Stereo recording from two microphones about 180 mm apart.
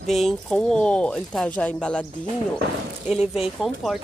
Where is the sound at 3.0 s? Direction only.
5° right (ahead or behind).